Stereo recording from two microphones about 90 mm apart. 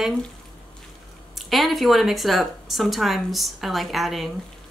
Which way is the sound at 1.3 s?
Centre (ahead or behind).